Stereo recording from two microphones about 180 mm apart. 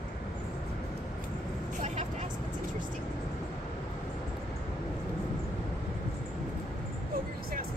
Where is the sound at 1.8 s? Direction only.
40° right (ahead or behind).